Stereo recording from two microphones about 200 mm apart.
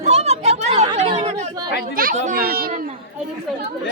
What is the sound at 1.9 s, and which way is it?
Children playing, 45° right (ahead or behind).